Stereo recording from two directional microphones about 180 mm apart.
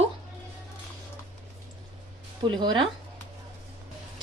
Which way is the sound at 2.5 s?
25° right (ahead or behind).